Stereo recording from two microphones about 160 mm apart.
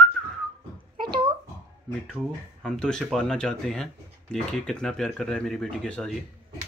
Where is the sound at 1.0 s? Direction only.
30° right (ahead or behind).